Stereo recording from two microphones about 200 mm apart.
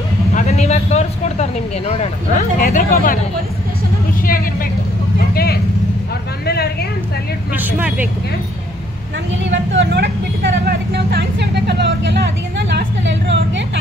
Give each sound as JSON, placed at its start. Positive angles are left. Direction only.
{"t": 0.3, "sound": "speech", "side_deg": 35}
{"t": 2.6, "sound": "speech", "side_deg": 45}
{"t": 5.3, "sound": "vehicle", "side_deg": 50}
{"t": 6.4, "sound": "a sound", "side_deg": 55}
{"t": 7.5, "sound": "speech", "side_deg": -10}
{"t": 9.5, "sound": "speech", "side_deg": -65}